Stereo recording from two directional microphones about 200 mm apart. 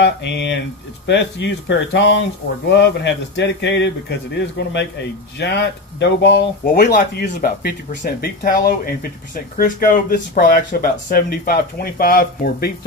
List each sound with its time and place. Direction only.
0.0 s speech: 60° left (ahead or behind)
6.6 s speech: 45° left (ahead or behind)